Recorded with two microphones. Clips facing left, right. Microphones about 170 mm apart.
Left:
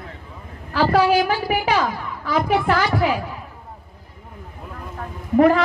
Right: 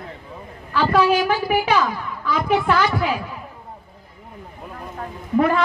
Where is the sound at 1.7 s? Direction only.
45° left (ahead or behind).